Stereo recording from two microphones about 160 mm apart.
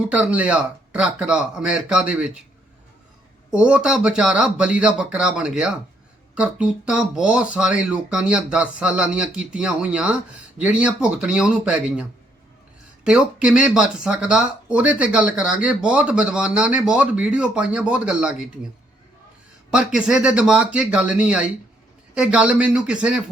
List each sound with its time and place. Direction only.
0.1 s speech: 10° right (ahead or behind)
3.5 s speech: 5° right (ahead or behind)
13.1 s speech: 5° right (ahead or behind)
19.7 s speech: 5° right (ahead or behind)